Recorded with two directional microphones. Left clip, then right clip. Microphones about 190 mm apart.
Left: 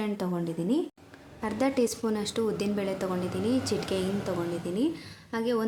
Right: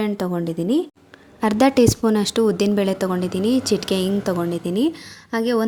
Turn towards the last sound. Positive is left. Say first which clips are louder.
# right 8 dB
turn(degrees=-40)  # may be behind; listen again after turning